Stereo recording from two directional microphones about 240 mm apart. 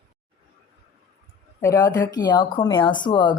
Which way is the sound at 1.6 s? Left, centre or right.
Centre.